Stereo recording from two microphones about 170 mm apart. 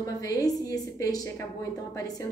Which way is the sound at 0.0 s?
20° left (ahead or behind).